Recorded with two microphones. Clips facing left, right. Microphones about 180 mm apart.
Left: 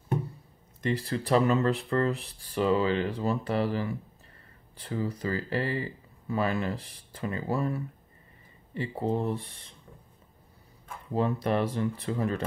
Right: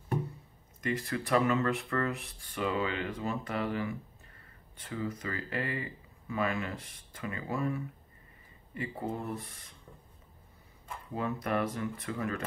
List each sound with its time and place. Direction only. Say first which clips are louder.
0.7 s speech: left 4 dB; 30° left (ahead or behind)
11.1 s speech: left 5 dB; 30° left (ahead or behind)